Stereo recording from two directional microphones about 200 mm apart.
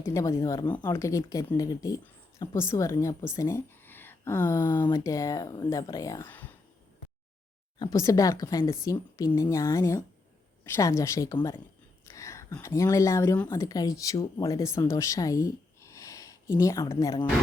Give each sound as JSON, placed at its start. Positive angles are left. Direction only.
{"t": 0.0, "sound": "speech", "side_deg": 15}
{"t": 7.8, "sound": "speech", "side_deg": 15}